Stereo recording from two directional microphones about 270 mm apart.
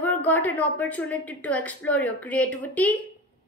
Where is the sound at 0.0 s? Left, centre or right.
Centre.